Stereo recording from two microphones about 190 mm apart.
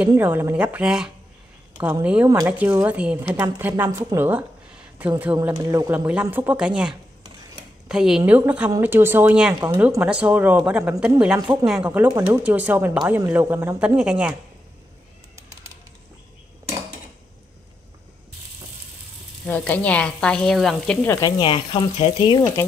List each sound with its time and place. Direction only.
0.1 s a woman's voice: 10° right (ahead or behind)
19.4 s speech: 10° left (ahead or behind)
21.4 s speech: 25° left (ahead or behind)